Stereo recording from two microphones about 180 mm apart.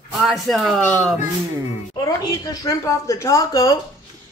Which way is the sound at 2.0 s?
20° left (ahead or behind).